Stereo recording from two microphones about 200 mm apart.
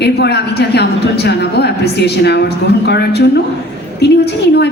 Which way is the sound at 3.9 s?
55° left (ahead or behind).